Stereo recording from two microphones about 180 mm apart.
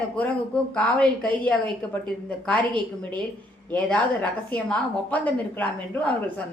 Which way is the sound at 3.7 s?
10° left (ahead or behind).